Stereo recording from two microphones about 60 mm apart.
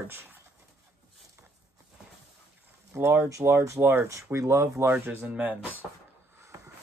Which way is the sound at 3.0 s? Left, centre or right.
Right.